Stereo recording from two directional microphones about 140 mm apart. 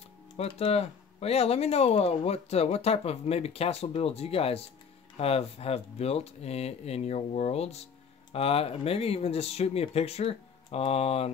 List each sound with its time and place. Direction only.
0.4 s speech: 45° left (ahead or behind)